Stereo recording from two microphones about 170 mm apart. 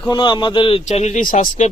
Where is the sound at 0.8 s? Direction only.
40° left (ahead or behind).